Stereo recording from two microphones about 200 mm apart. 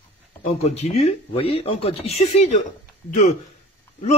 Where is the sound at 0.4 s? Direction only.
35° left (ahead or behind).